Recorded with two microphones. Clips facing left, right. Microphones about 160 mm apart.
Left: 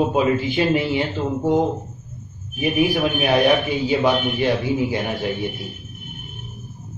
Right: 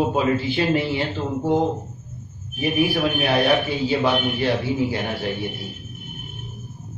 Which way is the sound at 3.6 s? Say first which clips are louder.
Left 2 dB; 15° left (ahead or behind).